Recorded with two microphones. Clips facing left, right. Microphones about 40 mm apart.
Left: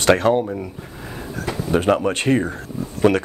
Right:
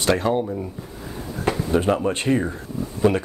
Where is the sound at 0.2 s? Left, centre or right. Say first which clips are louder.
Left 4 dB; left.